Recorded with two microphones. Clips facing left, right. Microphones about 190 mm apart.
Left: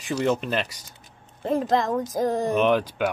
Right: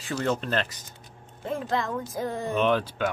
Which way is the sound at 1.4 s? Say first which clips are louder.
Left 6 dB; 40° left (ahead or behind).